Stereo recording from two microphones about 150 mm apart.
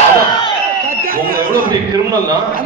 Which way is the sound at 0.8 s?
70° right (ahead or behind).